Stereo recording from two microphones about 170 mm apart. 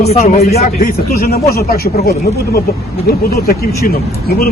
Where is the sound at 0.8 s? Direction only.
60° left (ahead or behind).